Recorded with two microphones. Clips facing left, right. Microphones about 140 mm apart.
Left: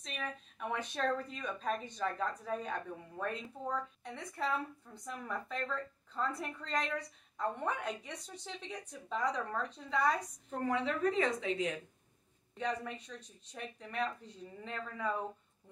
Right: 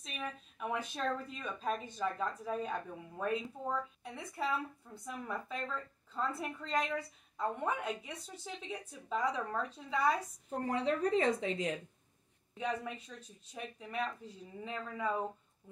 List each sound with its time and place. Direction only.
0.6 s speech: 5° right (ahead or behind)
10.7 s a woman's voice: 35° right (ahead or behind)
12.5 s speech: 5° right (ahead or behind)